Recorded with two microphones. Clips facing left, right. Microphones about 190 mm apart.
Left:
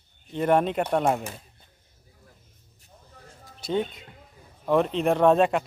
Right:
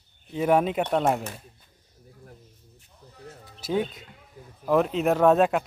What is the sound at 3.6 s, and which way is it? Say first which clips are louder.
Speech: even; 5° right (ahead or behind).